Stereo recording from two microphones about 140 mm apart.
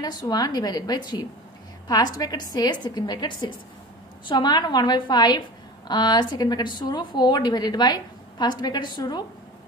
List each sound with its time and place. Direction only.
0.0 s a woman's voice: 30° left (ahead or behind)